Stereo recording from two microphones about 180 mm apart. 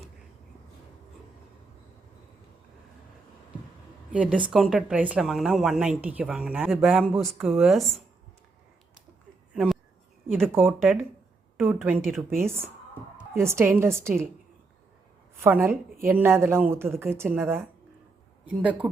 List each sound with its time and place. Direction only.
4.1 s a woman's voice: 5° right (ahead or behind)
10.5 s a woman's voice: 10° right (ahead or behind)
12.0 s a woman's voice: centre (ahead or behind)
12.4 s a woman's voice: 15° right (ahead or behind)
15.4 s a woman's voice: 10° right (ahead or behind)